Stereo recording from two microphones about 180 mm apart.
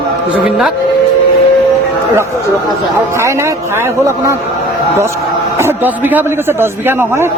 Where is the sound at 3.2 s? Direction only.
15° right (ahead or behind).